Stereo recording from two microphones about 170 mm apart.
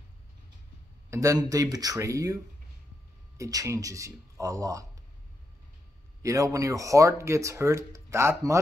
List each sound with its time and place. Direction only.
1.1 s speech: 20° right (ahead or behind)
3.3 s speech: 20° right (ahead or behind)
6.2 s speech: 20° right (ahead or behind)